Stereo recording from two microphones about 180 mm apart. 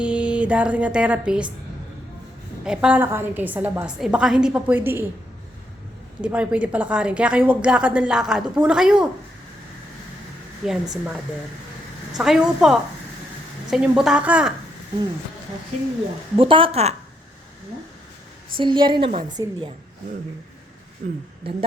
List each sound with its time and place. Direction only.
0.0 s speech: 5° right (ahead or behind)
2.6 s a woman's voice: 5° right (ahead or behind)
6.2 s a woman's voice: 5° right (ahead or behind)
10.6 s a woman's voice: 5° right (ahead or behind)
12.1 s a woman's voice: 5° right (ahead or behind)
16.4 s a woman's voice: 30° right (ahead or behind)
18.5 s a woman's voice: 25° right (ahead or behind)
21.0 s a woman's voice: 50° right (ahead or behind)